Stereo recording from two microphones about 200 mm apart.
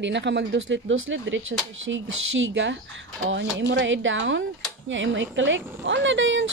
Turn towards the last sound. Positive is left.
turn(degrees=-70)  # may be behind; listen again after turning